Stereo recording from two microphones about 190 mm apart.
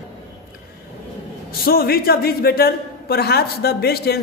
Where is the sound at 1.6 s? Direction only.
55° left (ahead or behind).